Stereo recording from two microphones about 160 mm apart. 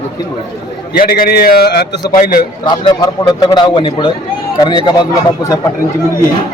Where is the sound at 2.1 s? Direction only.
60° left (ahead or behind).